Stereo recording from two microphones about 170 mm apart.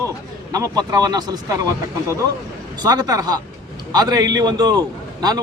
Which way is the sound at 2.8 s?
25° right (ahead or behind).